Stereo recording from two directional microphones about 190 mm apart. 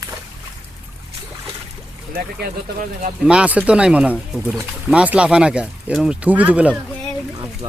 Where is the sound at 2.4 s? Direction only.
45° right (ahead or behind).